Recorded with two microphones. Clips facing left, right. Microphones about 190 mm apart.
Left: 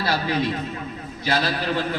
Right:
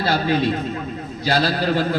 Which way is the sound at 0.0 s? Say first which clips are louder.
Right 4 dB; 25° right (ahead or behind).